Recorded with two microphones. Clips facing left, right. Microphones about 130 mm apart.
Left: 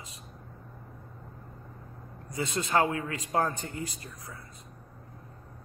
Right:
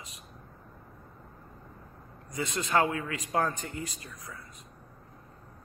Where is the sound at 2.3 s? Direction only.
25° left (ahead or behind).